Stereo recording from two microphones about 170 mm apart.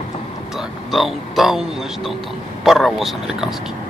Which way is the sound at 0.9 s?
Centre (ahead or behind).